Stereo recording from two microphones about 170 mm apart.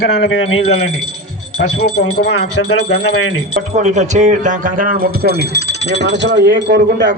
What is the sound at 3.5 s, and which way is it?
Speech, 45° right (ahead or behind).